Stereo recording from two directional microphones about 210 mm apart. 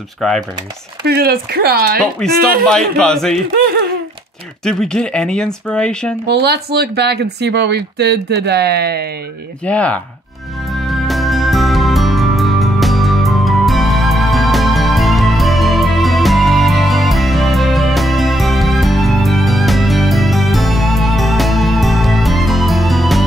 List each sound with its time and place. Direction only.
0.2 s speech: centre (ahead or behind)
1.0 s speech: 50° right (ahead or behind)
2.0 s speech: centre (ahead or behind)
3.5 s speech: 45° right (ahead or behind)
4.6 s speech: 5° left (ahead or behind)
6.2 s speech: 50° right (ahead or behind)
9.7 s speech: 5° left (ahead or behind)
10.9 s music: centre (ahead or behind)